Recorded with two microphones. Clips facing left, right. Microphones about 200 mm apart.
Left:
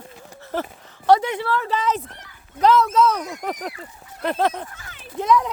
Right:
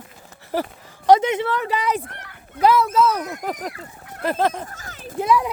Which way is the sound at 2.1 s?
65° right (ahead or behind).